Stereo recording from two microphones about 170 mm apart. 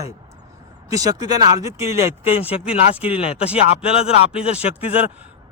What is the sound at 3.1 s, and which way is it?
Speech, 35° left (ahead or behind).